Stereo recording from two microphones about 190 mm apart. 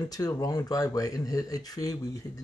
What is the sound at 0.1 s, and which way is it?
Speech, 20° left (ahead or behind).